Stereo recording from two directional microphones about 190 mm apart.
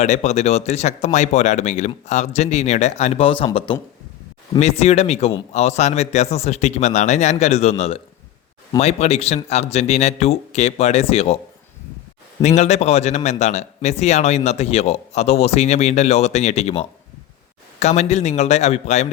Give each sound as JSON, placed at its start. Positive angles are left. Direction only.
{"t": 0.0, "sound": "a man's voice", "side_deg": 35}
{"t": 12.4, "sound": "a man's voice", "side_deg": 35}